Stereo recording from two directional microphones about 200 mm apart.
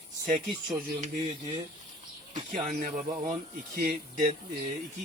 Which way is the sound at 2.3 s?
40° right (ahead or behind).